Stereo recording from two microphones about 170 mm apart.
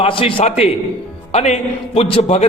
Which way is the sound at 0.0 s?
30° left (ahead or behind).